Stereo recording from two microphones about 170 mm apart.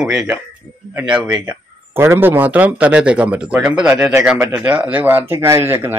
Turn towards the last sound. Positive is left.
turn(degrees=-15)  # may be behind; listen again after turning